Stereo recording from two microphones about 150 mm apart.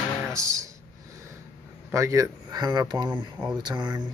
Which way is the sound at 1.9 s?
20° right (ahead or behind).